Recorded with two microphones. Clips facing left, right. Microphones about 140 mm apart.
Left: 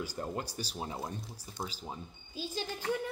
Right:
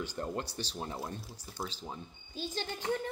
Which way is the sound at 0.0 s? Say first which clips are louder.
Right 1 dB; 10° left (ahead or behind).